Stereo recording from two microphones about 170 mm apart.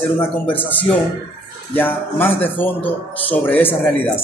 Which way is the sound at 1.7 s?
10° left (ahead or behind).